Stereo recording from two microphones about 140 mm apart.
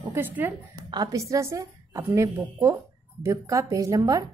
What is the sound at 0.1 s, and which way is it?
Speech, 15° right (ahead or behind).